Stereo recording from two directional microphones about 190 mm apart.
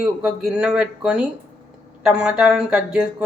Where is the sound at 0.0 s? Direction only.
5° right (ahead or behind).